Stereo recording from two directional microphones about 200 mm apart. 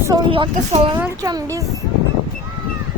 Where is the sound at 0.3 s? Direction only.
25° right (ahead or behind).